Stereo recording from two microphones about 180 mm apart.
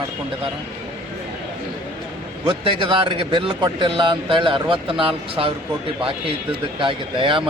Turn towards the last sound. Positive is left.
turn(degrees=-30)  # may be behind; listen again after turning